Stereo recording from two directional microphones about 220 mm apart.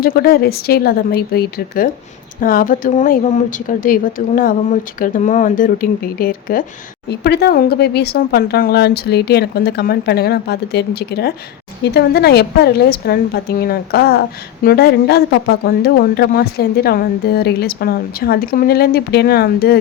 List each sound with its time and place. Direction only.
0.0 s a woman's voice: 45° left (ahead or behind)